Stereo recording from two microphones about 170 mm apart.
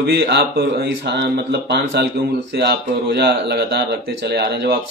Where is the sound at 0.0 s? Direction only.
80° right.